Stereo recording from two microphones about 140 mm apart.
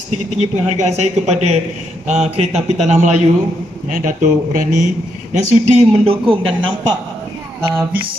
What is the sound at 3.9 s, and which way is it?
Speech, 70° right (ahead or behind).